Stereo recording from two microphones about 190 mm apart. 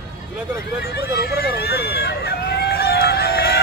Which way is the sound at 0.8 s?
55° left (ahead or behind).